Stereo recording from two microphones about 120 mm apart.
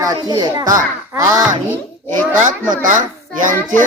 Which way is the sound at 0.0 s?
30° right (ahead or behind).